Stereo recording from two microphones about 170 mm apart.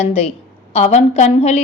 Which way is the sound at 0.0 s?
40° left (ahead or behind).